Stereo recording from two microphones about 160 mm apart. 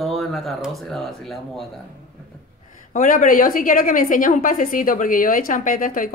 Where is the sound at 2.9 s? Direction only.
50° left (ahead or behind).